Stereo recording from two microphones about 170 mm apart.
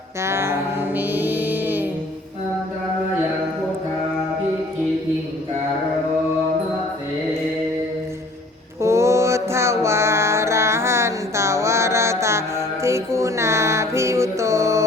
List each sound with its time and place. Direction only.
0.2 s music: 15° right (ahead or behind)
8.8 s music: 15° right (ahead or behind)